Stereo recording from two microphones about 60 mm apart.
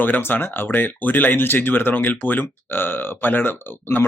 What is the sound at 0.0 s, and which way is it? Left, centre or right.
A man's voice, left.